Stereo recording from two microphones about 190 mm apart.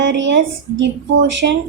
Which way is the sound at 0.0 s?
70° right (ahead or behind).